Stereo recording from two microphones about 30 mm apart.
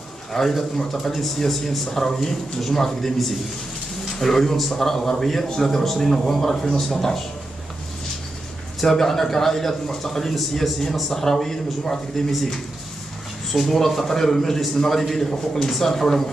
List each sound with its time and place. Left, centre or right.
0.3 s a man's voice: centre
8.8 s a man's voice: centre
13.5 s a man's voice: centre